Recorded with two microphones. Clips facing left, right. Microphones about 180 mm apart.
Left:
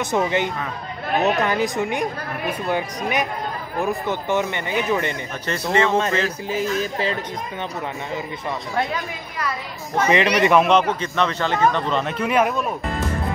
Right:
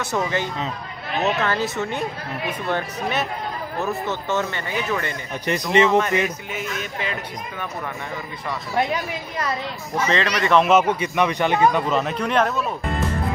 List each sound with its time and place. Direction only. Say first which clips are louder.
0.0 s speech: left 3 dB; 15° left (ahead or behind)
5.5 s speech: right 2 dB; 15° right (ahead or behind)
5.9 s speech: right 1 dB; 25° left (ahead or behind)
10.0 s speech: left 4 dB; 15° left (ahead or behind)
10.6 s speech: even; 5° right (ahead or behind); by 12.7 s 10° left (ahead or behind)